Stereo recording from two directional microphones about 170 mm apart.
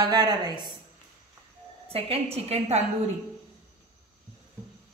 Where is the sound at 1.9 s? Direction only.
35° right (ahead or behind).